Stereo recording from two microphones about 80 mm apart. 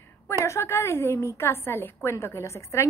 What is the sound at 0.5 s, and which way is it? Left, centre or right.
A woman's voice, left.